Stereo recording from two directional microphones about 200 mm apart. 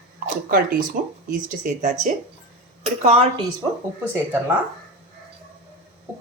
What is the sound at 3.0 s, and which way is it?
Speech, 30° right (ahead or behind).